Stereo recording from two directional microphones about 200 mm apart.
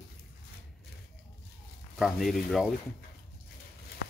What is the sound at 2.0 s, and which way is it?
Speech, centre (ahead or behind).